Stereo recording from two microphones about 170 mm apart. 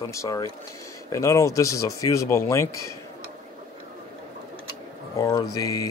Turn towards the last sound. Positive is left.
turn(degrees=20)  # may be behind; listen again after turning